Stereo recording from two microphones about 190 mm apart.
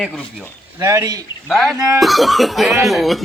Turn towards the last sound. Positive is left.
turn(degrees=0)  # may be behind; listen again after turning